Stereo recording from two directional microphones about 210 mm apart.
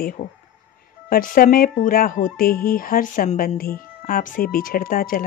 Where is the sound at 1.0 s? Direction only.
40° left (ahead or behind).